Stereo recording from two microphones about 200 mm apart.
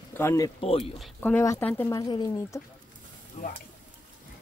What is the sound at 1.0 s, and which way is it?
Speech, 10° left (ahead or behind).